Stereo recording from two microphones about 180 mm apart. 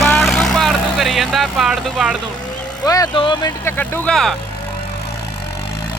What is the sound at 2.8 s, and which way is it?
Speech, 20° left (ahead or behind).